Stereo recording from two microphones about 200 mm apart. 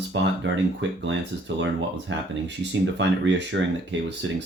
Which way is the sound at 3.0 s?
65° right (ahead or behind).